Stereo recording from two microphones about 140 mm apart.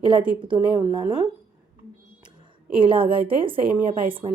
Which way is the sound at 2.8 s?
40° right (ahead or behind).